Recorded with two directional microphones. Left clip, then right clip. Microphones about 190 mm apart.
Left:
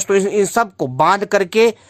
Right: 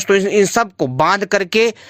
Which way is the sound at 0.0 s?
10° right (ahead or behind).